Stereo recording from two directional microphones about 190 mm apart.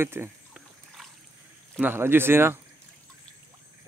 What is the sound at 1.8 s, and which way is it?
Speech, 10° right (ahead or behind).